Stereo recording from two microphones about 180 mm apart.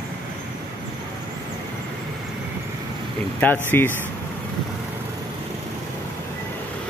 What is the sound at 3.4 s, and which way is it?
Speech, 10° left (ahead or behind).